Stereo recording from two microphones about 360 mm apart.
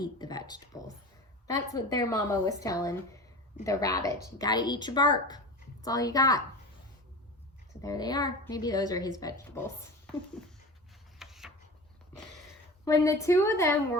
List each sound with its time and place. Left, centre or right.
0.0 s speech: centre
7.8 s speech: centre
11.2 s a sound: centre
12.8 s speech: centre